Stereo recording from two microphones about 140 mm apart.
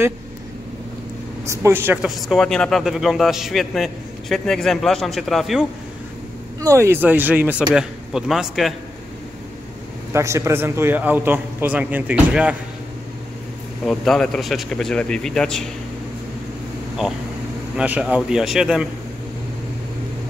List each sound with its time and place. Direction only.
1.4 s a man's voice: 20° right (ahead or behind)
2.0 s a man's voice: centre (ahead or behind)
6.6 s a man's voice: 20° right (ahead or behind); by 8.7 s centre (ahead or behind)
10.1 s a man's voice: 20° right (ahead or behind)
13.8 s a man's voice: centre (ahead or behind)
17.7 s a man's voice: 10° right (ahead or behind)